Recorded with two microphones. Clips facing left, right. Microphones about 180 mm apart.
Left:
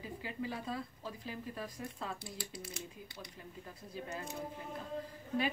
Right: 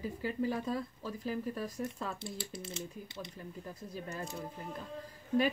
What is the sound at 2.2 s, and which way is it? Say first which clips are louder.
Speech: right 4 dB; 25° right (ahead or behind).